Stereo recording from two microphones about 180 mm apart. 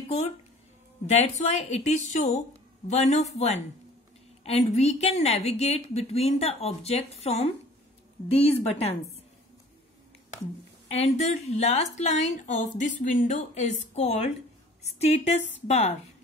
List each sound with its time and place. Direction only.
1.0 s a woman's voice: 40° left (ahead or behind)
10.9 s a woman's voice: 35° left (ahead or behind)